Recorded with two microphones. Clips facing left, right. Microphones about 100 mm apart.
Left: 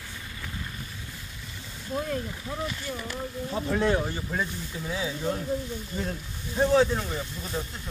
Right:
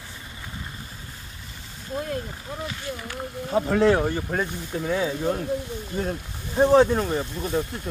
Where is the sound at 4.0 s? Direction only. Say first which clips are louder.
Right 5 dB; 50° right (ahead or behind).